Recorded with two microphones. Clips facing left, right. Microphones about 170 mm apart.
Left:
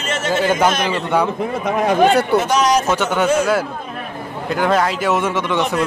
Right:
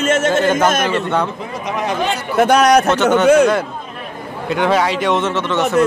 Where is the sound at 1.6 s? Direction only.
50° left (ahead or behind).